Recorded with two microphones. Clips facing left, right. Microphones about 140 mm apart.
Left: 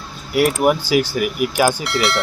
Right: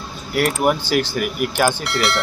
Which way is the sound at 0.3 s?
5° left (ahead or behind).